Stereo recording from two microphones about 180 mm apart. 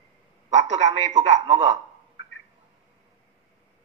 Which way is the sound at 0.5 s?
40° right (ahead or behind).